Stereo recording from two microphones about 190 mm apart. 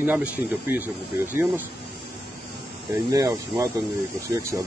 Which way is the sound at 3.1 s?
20° right (ahead or behind).